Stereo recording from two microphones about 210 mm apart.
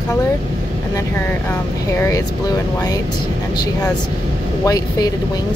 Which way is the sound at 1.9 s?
15° left (ahead or behind).